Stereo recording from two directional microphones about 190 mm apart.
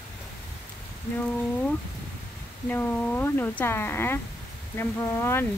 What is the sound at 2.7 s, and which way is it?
Speech, 10° left (ahead or behind).